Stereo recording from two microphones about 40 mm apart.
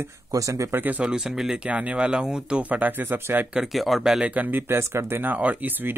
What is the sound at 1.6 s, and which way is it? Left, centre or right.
Speech, right.